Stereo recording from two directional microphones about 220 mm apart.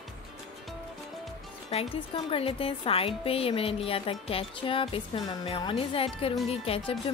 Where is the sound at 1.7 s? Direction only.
25° left (ahead or behind).